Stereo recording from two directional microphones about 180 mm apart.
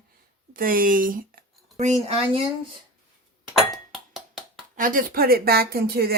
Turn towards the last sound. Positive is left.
turn(degrees=-60)  # may be behind; listen again after turning